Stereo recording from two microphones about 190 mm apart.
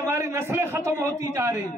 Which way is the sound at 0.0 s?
15° right (ahead or behind).